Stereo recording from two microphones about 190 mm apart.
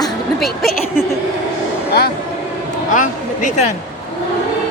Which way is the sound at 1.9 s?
55° left (ahead or behind).